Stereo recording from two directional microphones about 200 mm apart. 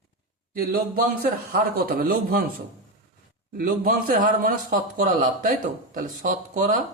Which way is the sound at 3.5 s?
45° right (ahead or behind).